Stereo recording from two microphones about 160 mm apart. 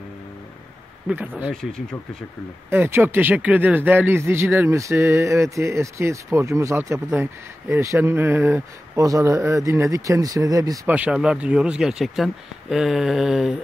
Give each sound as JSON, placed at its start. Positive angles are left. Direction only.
{"t": 1.0, "sound": "speech", "side_deg": -10}
{"t": 1.5, "sound": "speech", "side_deg": 5}
{"t": 2.7, "sound": "speech", "side_deg": -15}
{"t": 10.9, "sound": "speech", "side_deg": -5}